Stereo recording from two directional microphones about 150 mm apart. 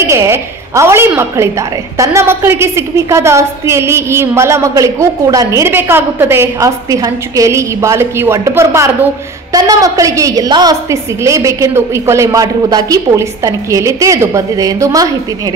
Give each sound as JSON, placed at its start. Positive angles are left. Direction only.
{"t": 0.0, "sound": "a woman's voice", "side_deg": -20}